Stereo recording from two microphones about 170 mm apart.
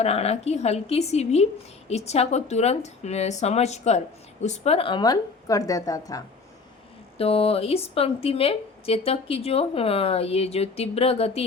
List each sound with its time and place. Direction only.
0.0 s a woman's voice: 40° left (ahead or behind); by 6.2 s 20° left (ahead or behind)
7.2 s speech: 35° left (ahead or behind)